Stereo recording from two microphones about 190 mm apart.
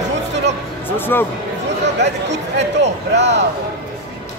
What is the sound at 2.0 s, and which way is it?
Speech, 65° right (ahead or behind).